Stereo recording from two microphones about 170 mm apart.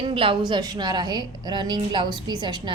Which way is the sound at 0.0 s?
30° right (ahead or behind).